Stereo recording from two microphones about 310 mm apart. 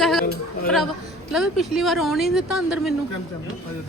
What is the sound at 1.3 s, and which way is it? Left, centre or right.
Speech, centre.